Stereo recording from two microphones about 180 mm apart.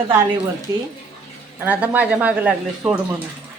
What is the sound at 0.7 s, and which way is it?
Speech, 15° right (ahead or behind).